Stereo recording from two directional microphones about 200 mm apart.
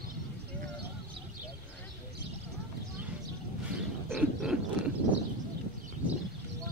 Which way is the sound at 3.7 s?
5° right (ahead or behind).